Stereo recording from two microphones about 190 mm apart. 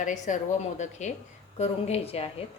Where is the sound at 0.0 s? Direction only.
40° left (ahead or behind).